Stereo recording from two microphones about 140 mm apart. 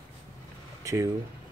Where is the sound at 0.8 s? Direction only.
20° right (ahead or behind).